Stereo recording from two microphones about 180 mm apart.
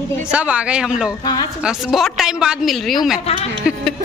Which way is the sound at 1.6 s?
Centre (ahead or behind).